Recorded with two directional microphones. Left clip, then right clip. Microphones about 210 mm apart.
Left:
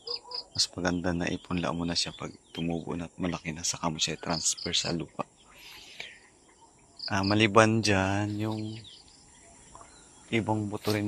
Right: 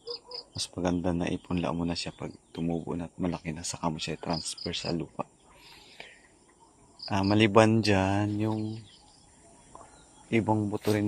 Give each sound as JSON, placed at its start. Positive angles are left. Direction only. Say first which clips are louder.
{"t": 0.5, "sound": "speech", "louder": "left 2 dB", "side_deg": -15}
{"t": 6.0, "sound": "cricket", "louder": "left 5 dB", "side_deg": -10}
{"t": 6.9, "sound": "speech", "louder": "even", "side_deg": -15}
{"t": 10.4, "sound": "speech", "louder": "right 3 dB", "side_deg": -20}